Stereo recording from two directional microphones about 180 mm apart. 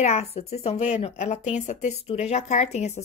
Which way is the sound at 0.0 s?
35° left (ahead or behind).